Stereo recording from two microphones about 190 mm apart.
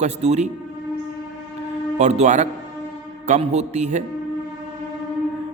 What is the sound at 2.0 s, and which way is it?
A man's voice, 35° right (ahead or behind).